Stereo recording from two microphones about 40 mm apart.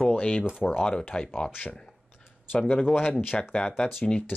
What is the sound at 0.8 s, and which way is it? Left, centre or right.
Speech, left.